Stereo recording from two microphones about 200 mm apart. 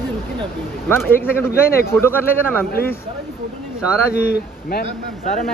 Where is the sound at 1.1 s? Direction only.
10° left (ahead or behind).